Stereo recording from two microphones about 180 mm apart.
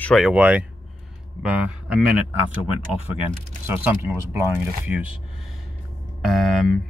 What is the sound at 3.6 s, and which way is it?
Speech, 10° right (ahead or behind).